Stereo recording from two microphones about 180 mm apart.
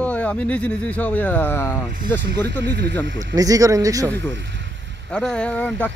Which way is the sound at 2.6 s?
70° right (ahead or behind).